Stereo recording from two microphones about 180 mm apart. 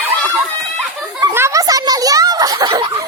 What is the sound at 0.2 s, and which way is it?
Speech, centre (ahead or behind).